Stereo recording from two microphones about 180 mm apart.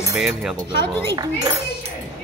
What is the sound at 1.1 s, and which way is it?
Speech, 20° right (ahead or behind).